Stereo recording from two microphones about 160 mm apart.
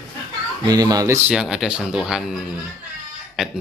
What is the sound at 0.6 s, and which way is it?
Speech, 25° right (ahead or behind).